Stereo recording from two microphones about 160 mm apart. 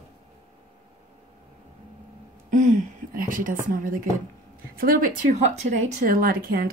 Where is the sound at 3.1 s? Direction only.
60° right (ahead or behind).